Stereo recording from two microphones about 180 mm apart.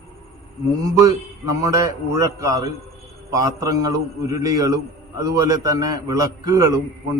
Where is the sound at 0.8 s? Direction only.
20° right (ahead or behind).